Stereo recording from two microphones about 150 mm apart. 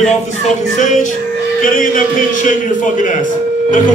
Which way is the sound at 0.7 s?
55° left (ahead or behind).